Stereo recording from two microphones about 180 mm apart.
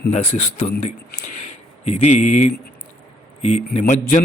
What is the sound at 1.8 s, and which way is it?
A man's voice, 40° left (ahead or behind).